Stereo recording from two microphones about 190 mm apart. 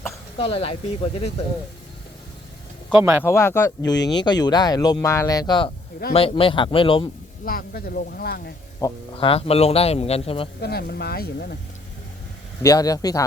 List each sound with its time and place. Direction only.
0.3 s speech: 30° left (ahead or behind)
2.9 s speech: 10° right (ahead or behind)
3.2 s speech: 15° left (ahead or behind)
7.4 s speech: 50° left (ahead or behind)
8.8 s speech: 15° left (ahead or behind)
9.1 s speech: 30° left (ahead or behind)
10.6 s speech: 55° left (ahead or behind)
12.6 s speech: 20° left (ahead or behind)